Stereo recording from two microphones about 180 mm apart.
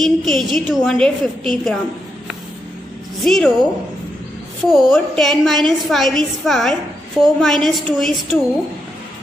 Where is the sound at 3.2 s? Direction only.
5° left (ahead or behind).